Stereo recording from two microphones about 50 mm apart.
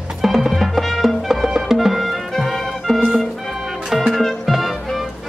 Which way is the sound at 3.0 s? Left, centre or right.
Centre.